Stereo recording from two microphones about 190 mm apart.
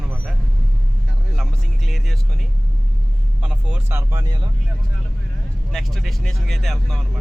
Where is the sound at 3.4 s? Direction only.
10° right (ahead or behind).